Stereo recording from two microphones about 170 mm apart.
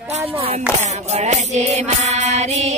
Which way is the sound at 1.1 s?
40° right (ahead or behind).